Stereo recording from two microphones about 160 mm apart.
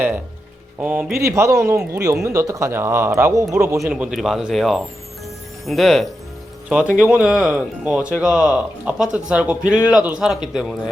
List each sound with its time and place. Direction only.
0.8 s speech: 10° right (ahead or behind)
1.2 s speech: 20° right (ahead or behind)
3.8 s speech: 5° right (ahead or behind)